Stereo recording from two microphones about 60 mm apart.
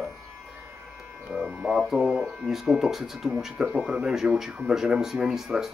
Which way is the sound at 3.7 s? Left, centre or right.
Right.